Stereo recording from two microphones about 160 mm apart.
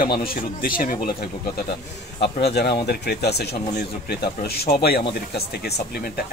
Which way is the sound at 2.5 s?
85° left.